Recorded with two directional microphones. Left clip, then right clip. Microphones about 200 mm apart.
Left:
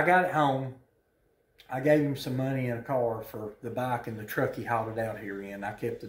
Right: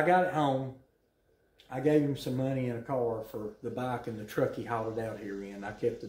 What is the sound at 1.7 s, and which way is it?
Speech, 20° left (ahead or behind).